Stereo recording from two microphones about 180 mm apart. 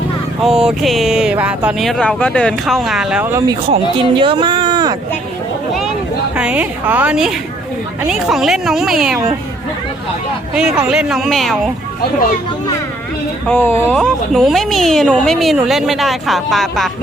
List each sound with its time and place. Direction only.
0.4 s speech: 5° right (ahead or behind)
3.3 s speech: 20° right (ahead or behind)
6.3 s a woman's voice: 5° right (ahead or behind)
10.5 s speech: 5° right (ahead or behind)
13.5 s speech: 10° left (ahead or behind)
13.9 s speech: centre (ahead or behind)